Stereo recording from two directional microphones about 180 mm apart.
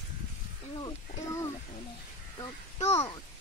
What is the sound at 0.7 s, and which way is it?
Speech, 20° left (ahead or behind).